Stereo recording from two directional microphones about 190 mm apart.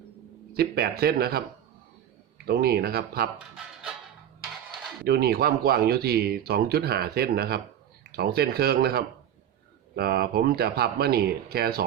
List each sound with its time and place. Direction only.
0.5 s speech: 55° right (ahead or behind)
2.5 s speech: 55° right (ahead or behind)
5.0 s speech: 55° right (ahead or behind)